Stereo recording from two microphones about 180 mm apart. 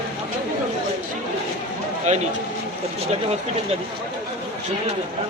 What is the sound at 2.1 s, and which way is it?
Speech, 40° right (ahead or behind).